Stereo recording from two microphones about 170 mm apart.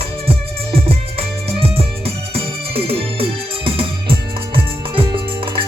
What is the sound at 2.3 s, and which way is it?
Music, 35° right (ahead or behind).